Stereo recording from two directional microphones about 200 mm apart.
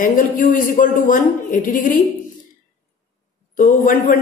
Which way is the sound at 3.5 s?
40° left (ahead or behind).